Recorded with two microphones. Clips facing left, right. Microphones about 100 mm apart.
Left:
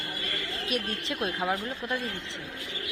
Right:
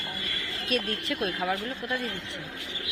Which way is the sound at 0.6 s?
20° left (ahead or behind).